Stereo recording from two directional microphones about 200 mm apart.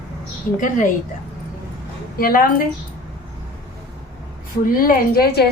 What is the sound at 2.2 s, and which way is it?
Speech, 45° left (ahead or behind).